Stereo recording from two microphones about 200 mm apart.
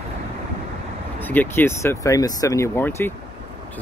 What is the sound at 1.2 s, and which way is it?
Speech, 10° left (ahead or behind).